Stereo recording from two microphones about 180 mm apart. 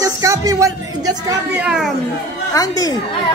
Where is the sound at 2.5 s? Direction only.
20° left (ahead or behind).